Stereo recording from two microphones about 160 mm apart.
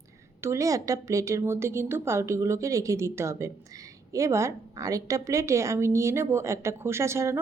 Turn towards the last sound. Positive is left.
turn(degrees=-15)  # may be behind; listen again after turning